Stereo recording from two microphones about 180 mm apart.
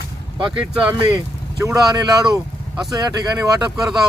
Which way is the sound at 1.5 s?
20° right (ahead or behind).